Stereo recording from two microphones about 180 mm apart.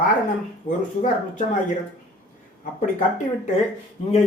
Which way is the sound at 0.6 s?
45° left (ahead or behind).